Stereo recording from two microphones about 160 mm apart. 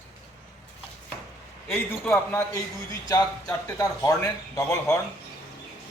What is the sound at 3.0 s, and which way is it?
A man's voice, 25° left (ahead or behind).